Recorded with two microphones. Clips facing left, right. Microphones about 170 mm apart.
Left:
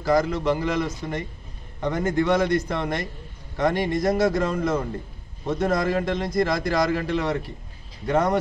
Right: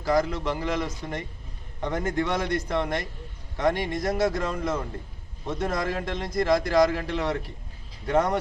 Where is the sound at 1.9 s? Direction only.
5° left (ahead or behind).